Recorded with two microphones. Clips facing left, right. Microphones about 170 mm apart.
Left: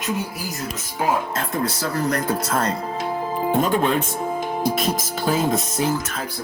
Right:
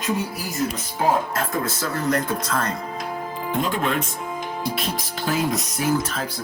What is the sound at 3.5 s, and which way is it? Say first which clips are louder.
Speech: left 3 dB; 40° left (ahead or behind).